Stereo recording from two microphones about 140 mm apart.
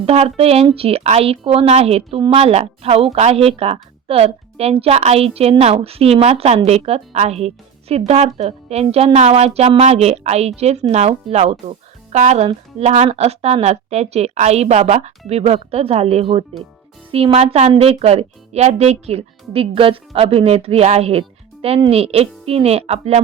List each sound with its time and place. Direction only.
0.0 s speech: 45° right (ahead or behind)